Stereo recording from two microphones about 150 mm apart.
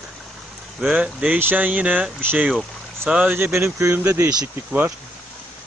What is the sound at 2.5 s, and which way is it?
Speech, centre (ahead or behind).